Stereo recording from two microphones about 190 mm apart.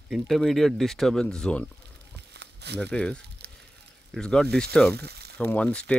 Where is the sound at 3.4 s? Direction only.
60° right (ahead or behind).